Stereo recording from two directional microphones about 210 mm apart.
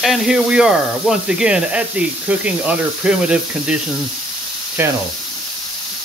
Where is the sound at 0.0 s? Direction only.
Centre (ahead or behind).